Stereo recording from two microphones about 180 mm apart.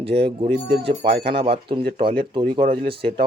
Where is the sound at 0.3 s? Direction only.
30° right (ahead or behind).